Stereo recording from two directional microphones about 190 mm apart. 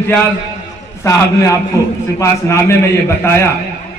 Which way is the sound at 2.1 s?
15° left (ahead or behind).